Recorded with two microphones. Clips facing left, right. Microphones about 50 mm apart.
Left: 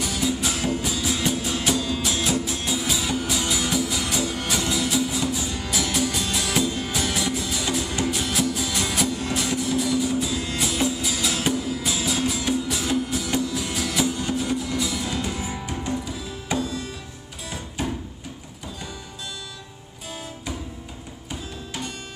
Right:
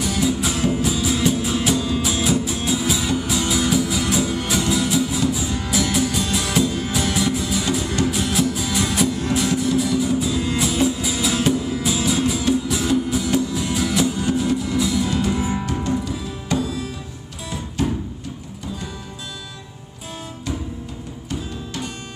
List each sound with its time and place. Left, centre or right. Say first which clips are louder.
0.0 s music: right 4 dB; centre
15.3 s music: right 7 dB; centre
17.8 s a sound: right 6 dB; centre